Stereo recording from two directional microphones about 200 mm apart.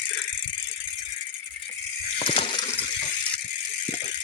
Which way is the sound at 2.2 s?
30° left (ahead or behind).